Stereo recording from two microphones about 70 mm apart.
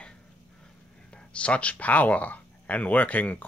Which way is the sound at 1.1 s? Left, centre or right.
Centre.